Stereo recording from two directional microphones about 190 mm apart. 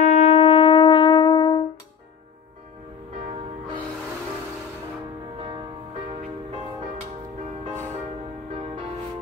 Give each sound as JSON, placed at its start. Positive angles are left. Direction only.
{"t": 0.0, "sound": "shofar", "side_deg": 35}